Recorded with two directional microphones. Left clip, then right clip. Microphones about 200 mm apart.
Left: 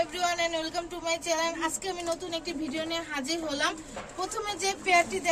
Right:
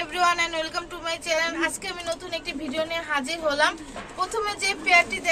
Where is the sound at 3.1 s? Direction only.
30° right (ahead or behind).